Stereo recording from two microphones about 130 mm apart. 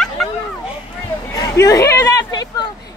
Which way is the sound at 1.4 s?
25° left (ahead or behind).